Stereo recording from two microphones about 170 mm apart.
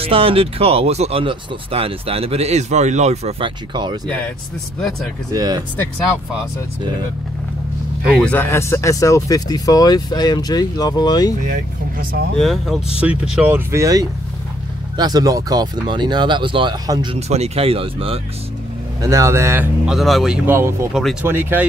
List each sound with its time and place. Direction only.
0.0 s speech: 35° right (ahead or behind)
5.3 s speech: 20° right (ahead or behind)
8.2 s speech: 10° left (ahead or behind)
12.4 s speech: centre (ahead or behind); by 17.2 s 25° right (ahead or behind)
17.3 s speech: 35° right (ahead or behind)
18.9 s speech: 20° right (ahead or behind)
19.9 s speech: centre (ahead or behind)
20.4 s speech: 15° right (ahead or behind)
20.9 s speech: 5° right (ahead or behind)
21.3 s speech: 15° right (ahead or behind)